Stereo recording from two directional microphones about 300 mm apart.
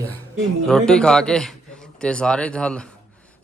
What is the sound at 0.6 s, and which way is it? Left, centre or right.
A man's voice, centre.